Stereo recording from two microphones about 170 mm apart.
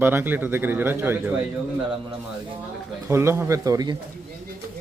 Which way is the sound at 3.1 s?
15° right (ahead or behind).